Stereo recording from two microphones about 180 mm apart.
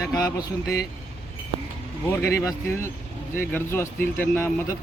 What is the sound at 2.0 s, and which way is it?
Speech, 15° left (ahead or behind).